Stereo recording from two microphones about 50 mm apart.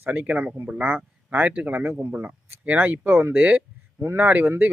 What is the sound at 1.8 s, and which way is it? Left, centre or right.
Speech, right.